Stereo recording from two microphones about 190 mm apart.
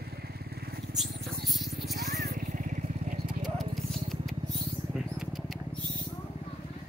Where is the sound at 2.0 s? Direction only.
40° right (ahead or behind).